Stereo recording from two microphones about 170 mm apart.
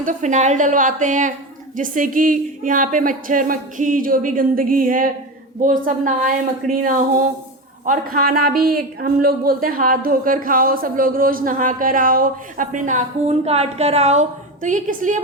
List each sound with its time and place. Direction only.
0.0 s a woman's voice: 45° right (ahead or behind)